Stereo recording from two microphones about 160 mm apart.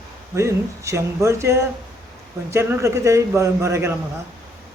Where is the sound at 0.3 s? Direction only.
20° right (ahead or behind).